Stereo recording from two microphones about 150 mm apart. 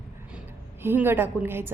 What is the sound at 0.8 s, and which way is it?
Speech, 15° right (ahead or behind).